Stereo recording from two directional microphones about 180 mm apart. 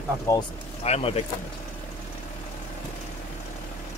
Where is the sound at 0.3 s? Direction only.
15° left (ahead or behind).